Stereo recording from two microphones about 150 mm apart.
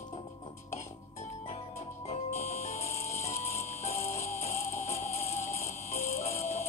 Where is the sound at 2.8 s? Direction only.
45° left (ahead or behind).